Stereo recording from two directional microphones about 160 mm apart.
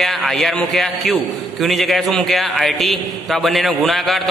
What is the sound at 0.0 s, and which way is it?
A man's voice, centre (ahead or behind).